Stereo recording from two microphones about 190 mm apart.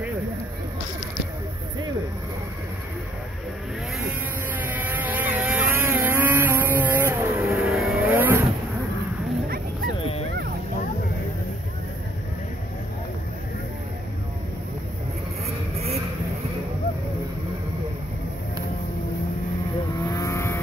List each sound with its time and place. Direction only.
4.6 s vehicle: 10° right (ahead or behind)
8.1 s vehicle: 10° right (ahead or behind)
20.0 s vehicle: 15° left (ahead or behind)